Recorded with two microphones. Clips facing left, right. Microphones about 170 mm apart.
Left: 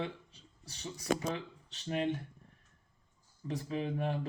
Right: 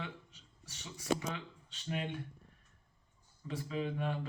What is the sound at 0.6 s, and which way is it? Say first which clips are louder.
Speech: left 6 dB; 35° left (ahead or behind).